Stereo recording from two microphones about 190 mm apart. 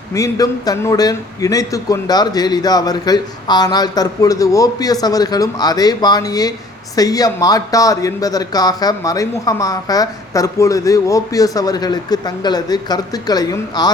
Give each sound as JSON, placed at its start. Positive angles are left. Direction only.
{"t": 0.1, "sound": "speech", "side_deg": 20}